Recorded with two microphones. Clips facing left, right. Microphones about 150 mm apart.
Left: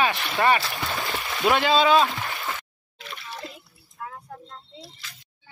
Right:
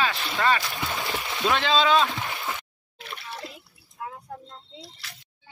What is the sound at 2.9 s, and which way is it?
Water, 60° right (ahead or behind).